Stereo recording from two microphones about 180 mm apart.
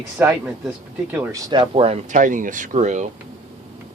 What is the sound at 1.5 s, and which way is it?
Speech, 30° right (ahead or behind).